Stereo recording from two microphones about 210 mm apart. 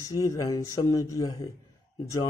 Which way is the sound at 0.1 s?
15° left (ahead or behind).